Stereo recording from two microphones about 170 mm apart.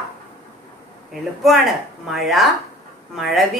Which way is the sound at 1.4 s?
Centre (ahead or behind).